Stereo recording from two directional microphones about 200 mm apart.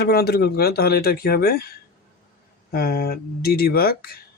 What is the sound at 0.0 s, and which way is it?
Speech, 50° left (ahead or behind).